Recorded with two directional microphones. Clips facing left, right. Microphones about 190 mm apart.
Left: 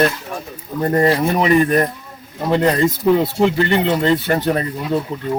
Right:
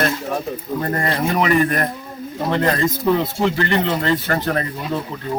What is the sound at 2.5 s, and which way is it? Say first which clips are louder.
Speech: left 4 dB; 15° left (ahead or behind).